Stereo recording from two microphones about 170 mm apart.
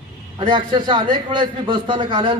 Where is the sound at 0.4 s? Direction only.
30° right (ahead or behind).